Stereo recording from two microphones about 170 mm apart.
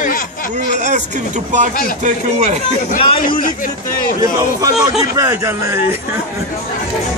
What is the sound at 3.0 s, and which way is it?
Speech, 30° left (ahead or behind).